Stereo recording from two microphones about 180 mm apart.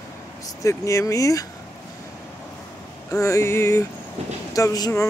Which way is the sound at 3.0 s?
15° left (ahead or behind).